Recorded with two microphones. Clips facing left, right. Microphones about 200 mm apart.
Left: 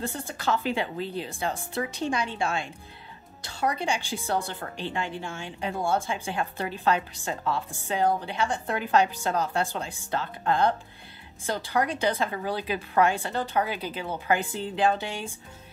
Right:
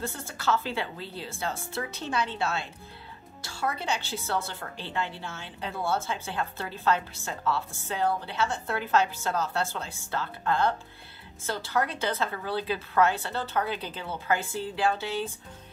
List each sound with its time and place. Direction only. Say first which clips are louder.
0.0 s a woman's voice: left 2 dB; 15° left (ahead or behind)